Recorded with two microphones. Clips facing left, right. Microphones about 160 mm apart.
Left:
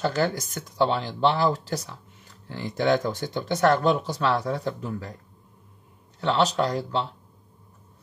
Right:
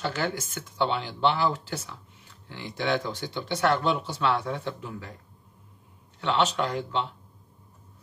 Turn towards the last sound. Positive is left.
turn(degrees=35)  # may be behind; listen again after turning